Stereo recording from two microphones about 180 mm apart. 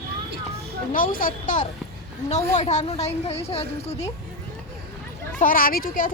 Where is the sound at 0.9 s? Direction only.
50° left (ahead or behind).